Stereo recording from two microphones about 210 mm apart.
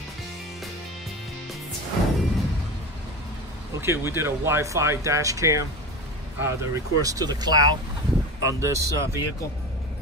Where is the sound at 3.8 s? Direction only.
10° right (ahead or behind).